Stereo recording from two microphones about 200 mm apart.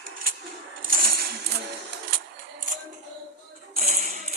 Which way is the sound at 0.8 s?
45° right (ahead or behind).